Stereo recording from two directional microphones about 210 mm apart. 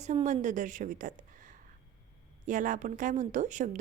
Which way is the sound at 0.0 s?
35° right (ahead or behind).